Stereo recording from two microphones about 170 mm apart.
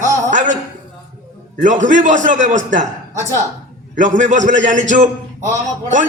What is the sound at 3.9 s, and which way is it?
Speech, 50° right (ahead or behind).